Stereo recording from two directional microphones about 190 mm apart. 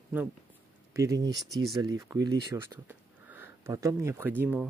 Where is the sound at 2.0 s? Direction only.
15° right (ahead or behind).